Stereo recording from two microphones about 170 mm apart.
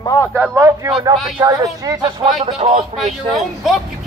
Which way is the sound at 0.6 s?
15° right (ahead or behind).